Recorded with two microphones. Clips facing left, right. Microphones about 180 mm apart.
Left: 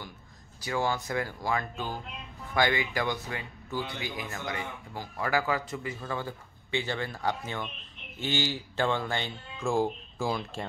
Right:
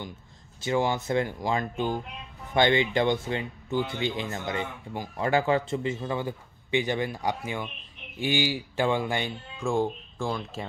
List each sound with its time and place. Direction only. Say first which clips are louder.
0.6 s speech: right 4 dB; 20° right (ahead or behind)
9.6 s speech: right 1 dB; centre (ahead or behind)